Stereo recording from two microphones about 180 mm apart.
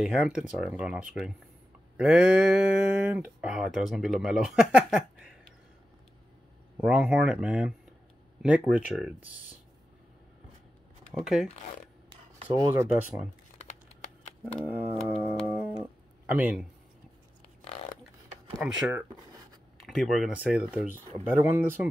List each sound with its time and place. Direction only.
0.0 s speech: centre (ahead or behind)
6.8 s speech: 5° right (ahead or behind)
11.2 s speech: centre (ahead or behind)
12.5 s speech: 20° right (ahead or behind)
13.6 s crumpling: 40° left (ahead or behind)
14.5 s music: 10° right (ahead or behind)
16.3 s speech: 5° right (ahead or behind)
18.6 s speech: 10° right (ahead or behind)